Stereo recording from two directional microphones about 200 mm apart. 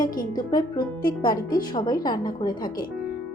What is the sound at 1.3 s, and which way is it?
Speech, 45° left (ahead or behind).